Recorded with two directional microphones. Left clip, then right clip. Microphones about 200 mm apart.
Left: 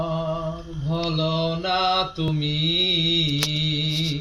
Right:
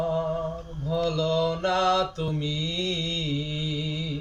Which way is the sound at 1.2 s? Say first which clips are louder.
Left 1 dB; 20° right (ahead or behind).